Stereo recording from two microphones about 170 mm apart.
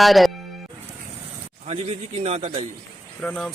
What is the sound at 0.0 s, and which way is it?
Speech, centre (ahead or behind).